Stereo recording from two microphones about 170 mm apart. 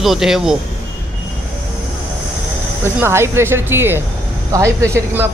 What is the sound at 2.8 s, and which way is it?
A man's voice, 15° right (ahead or behind).